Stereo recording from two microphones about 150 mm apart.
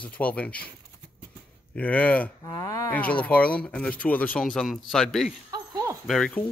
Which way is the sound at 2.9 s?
10° left (ahead or behind).